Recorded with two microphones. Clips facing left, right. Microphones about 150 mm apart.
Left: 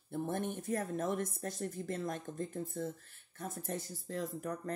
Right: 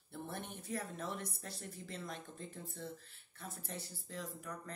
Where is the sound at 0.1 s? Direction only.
50° left (ahead or behind).